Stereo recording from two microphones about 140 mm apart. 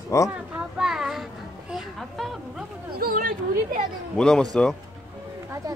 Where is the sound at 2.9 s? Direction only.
85° right.